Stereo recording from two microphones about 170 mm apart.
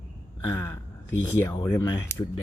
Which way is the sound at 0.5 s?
15° left (ahead or behind).